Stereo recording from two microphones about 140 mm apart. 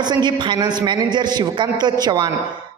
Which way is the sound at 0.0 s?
30° right (ahead or behind).